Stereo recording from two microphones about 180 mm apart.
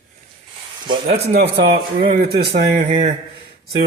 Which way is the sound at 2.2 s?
60° right (ahead or behind).